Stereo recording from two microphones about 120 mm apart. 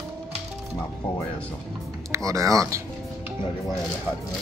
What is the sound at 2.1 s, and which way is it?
Speech, 25° right (ahead or behind).